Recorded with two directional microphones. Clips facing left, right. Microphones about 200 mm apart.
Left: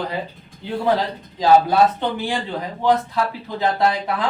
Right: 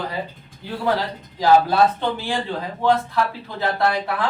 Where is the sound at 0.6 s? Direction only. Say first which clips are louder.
Left 3 dB; 20° left (ahead or behind).